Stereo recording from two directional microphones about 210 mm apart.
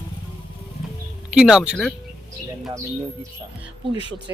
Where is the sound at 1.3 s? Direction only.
5° right (ahead or behind).